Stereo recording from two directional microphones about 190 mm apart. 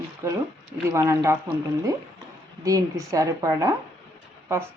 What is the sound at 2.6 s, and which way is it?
A woman's voice, 15° right (ahead or behind).